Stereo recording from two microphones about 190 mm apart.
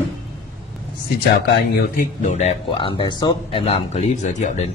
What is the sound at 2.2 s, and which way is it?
Speech, 35° left (ahead or behind).